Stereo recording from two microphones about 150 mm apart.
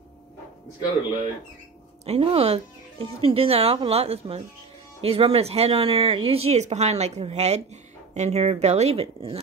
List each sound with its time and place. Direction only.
2.0 s speech: 45° right (ahead or behind)